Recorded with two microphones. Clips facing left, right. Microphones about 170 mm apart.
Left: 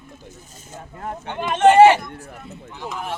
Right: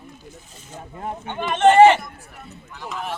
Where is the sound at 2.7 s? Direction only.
20° left (ahead or behind).